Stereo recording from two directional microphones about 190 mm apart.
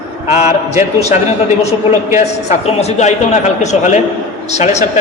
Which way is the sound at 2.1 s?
35° left (ahead or behind).